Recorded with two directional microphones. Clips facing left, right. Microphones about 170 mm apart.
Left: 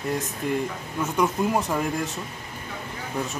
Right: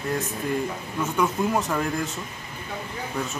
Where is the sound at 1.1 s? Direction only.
15° left (ahead or behind).